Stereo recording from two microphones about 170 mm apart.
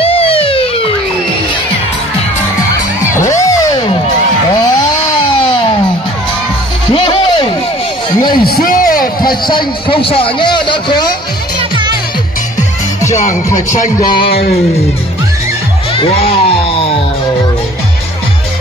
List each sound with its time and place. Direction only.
0.0 s police car: 35° left (ahead or behind)
3.3 s music: 20° left (ahead or behind)
5.4 s music: 30° left (ahead or behind)
6.9 s music: 30° left (ahead or behind)
8.3 s a sound: 60° left (ahead or behind)
9.5 s a man's voice: 30° left (ahead or behind)
13.3 s speech: 20° left (ahead or behind)
16.3 s a sound: 35° left (ahead or behind)